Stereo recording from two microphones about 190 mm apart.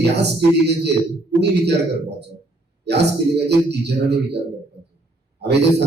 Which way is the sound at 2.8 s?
60° right (ahead or behind).